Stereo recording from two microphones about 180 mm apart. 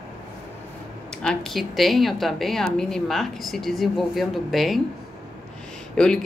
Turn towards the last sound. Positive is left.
turn(degrees=5)  # may be behind; listen again after turning